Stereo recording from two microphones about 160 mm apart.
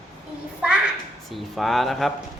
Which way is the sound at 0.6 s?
5° right (ahead or behind).